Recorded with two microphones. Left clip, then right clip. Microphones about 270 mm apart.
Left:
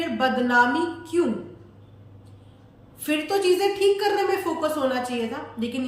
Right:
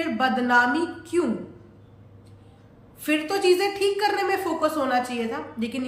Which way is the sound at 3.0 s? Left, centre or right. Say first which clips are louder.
Even; centre.